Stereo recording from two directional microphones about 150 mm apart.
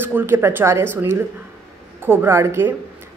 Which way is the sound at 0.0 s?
15° right (ahead or behind).